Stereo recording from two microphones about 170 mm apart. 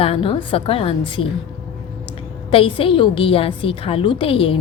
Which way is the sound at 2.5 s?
30° left (ahead or behind).